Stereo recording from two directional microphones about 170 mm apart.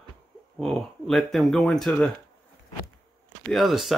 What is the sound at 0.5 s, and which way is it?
Speech, centre (ahead or behind).